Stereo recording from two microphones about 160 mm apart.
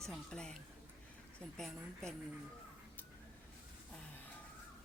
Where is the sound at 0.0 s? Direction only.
5° left (ahead or behind).